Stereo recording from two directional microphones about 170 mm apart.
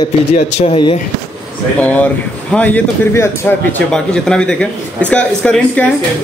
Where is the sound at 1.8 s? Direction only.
10° left (ahead or behind).